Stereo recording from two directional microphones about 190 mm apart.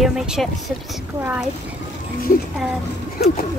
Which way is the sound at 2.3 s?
45° left (ahead or behind).